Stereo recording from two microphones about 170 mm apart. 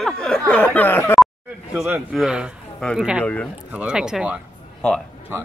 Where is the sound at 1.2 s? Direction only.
5° right (ahead or behind).